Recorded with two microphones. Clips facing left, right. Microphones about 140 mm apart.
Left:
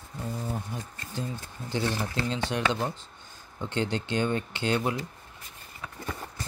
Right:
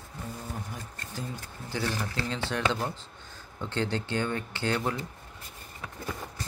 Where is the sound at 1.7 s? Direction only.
20° left (ahead or behind).